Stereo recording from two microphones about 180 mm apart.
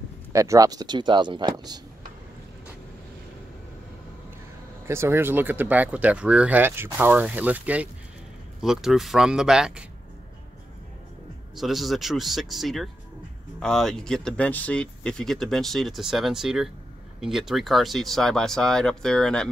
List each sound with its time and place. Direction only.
0.3 s speech: 15° right (ahead or behind)
4.8 s speech: 15° right (ahead or behind)
11.5 s speech: centre (ahead or behind)